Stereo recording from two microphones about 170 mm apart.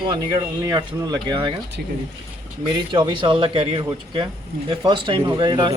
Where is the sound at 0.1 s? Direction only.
20° right (ahead or behind).